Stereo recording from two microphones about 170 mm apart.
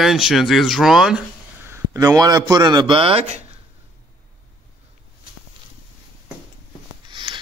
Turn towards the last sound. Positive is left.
turn(degrees=-25)  # may be behind; listen again after turning